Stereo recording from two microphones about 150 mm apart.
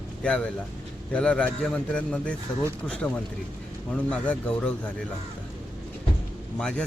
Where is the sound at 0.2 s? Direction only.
5° left (ahead or behind).